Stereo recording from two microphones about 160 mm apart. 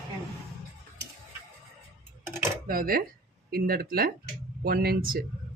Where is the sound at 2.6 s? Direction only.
65° right (ahead or behind).